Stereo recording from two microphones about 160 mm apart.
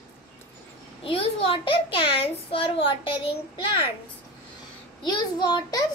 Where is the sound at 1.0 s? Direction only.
35° left (ahead or behind).